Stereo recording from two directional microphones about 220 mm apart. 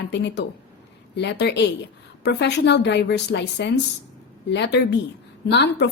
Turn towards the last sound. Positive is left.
turn(degrees=50)  # may be behind; listen again after turning